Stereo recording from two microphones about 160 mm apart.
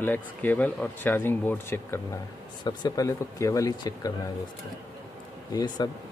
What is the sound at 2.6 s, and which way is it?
Speech, 25° left (ahead or behind).